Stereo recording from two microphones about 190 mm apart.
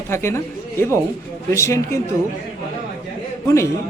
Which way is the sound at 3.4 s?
15° left (ahead or behind).